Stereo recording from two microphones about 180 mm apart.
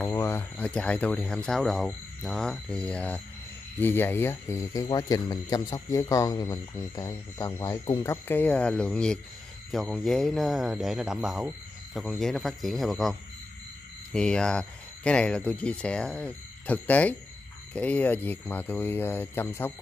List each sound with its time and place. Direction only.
0.1 s speech: 15° left (ahead or behind)